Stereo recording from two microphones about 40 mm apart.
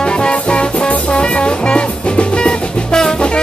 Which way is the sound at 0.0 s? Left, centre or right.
Left.